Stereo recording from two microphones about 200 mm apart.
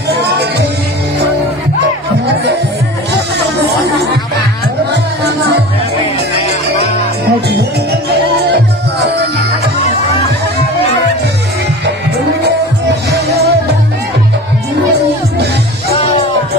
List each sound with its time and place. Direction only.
7.4 s music: 55° right (ahead or behind)
13.1 s music: 55° right (ahead or behind)